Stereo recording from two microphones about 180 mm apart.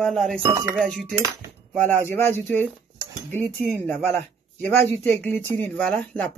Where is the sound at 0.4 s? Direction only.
15° right (ahead or behind).